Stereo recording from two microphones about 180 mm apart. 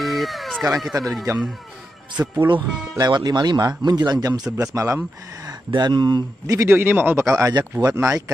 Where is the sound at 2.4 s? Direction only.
25° right (ahead or behind).